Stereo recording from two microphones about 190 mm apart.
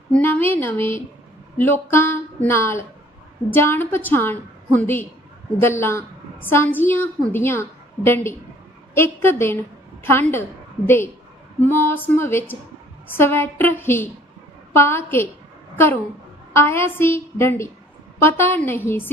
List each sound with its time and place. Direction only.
0.1 s a woman's voice: 10° left (ahead or behind)